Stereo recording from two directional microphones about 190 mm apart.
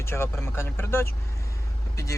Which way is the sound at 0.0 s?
15° left (ahead or behind).